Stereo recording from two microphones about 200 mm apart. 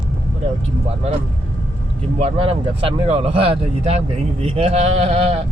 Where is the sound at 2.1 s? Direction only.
30° right (ahead or behind).